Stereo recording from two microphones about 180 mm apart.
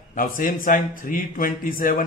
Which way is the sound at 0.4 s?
50° left (ahead or behind).